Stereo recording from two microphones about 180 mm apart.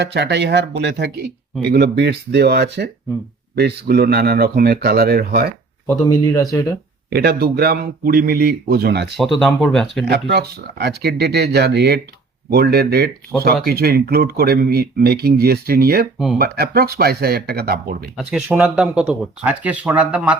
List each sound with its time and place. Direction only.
0.0 s speech: 75° right (ahead or behind)
6.2 s speech: 20° left (ahead or behind)
7.1 s speech: 60° right (ahead or behind)
9.1 s speech: centre (ahead or behind)
10.1 s speech: 65° right (ahead or behind)
16.1 s speech: centre (ahead or behind)
16.4 s speech: 55° right (ahead or behind)
18.3 s speech: 5° right (ahead or behind)